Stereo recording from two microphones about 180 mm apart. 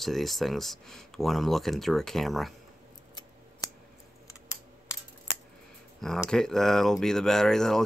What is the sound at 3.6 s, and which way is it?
Scissors, 20° left (ahead or behind).